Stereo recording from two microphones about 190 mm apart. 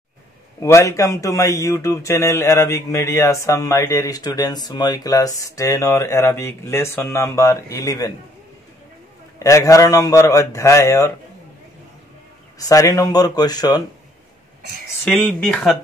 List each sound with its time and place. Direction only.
0.6 s speech: 15° left (ahead or behind)
9.4 s speech: 15° left (ahead or behind)
12.5 s speech: 20° left (ahead or behind)
15.0 s speech: 5° left (ahead or behind)